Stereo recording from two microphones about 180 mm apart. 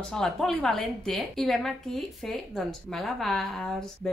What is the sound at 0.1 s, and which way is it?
A woman's voice, centre (ahead or behind).